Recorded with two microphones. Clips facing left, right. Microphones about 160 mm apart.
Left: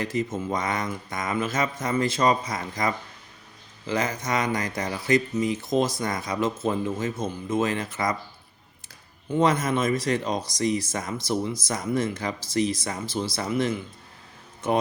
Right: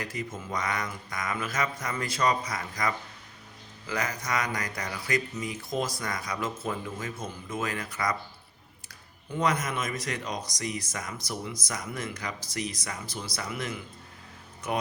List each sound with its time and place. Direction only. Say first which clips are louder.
0.0 s speech: left 8 dB; 25° left (ahead or behind)
9.3 s speech: left 6 dB; 25° left (ahead or behind)